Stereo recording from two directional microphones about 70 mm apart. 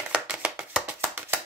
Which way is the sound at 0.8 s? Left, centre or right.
Right.